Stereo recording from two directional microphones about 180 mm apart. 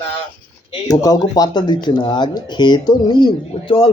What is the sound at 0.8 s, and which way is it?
Speech, 20° left (ahead or behind).